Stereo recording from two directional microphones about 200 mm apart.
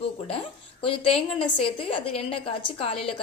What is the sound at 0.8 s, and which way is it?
A woman's voice, 25° left (ahead or behind).